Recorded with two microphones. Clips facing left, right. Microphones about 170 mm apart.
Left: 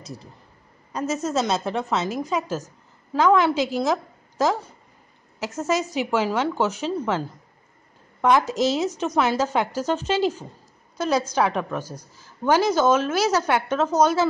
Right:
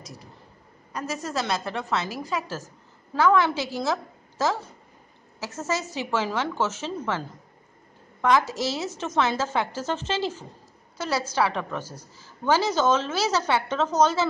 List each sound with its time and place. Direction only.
0.9 s a woman's voice: 25° left (ahead or behind)
5.6 s a woman's voice: 15° left (ahead or behind)